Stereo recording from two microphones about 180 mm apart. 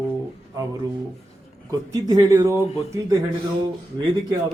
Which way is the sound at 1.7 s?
20° right (ahead or behind).